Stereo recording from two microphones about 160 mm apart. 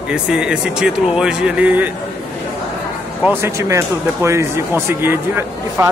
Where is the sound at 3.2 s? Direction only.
15° right (ahead or behind).